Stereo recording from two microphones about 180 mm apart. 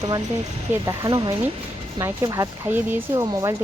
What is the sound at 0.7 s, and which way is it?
Speech, 20° right (ahead or behind).